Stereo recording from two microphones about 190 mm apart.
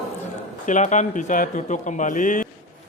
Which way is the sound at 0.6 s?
40° left (ahead or behind).